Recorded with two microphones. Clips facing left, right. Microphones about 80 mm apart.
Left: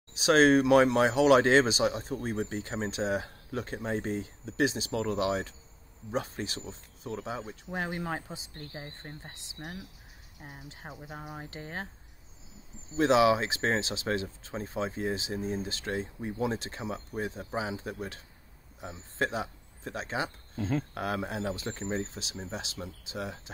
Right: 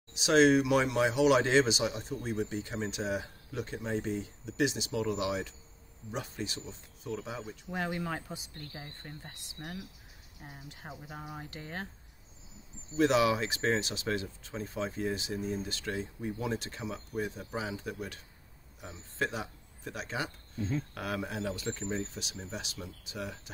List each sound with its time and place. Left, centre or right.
0.2 s speech: left
12.9 s a man's voice: left
20.6 s speech: left
20.9 s speech: left